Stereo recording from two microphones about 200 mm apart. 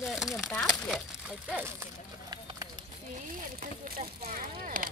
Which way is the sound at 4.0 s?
40° right (ahead or behind).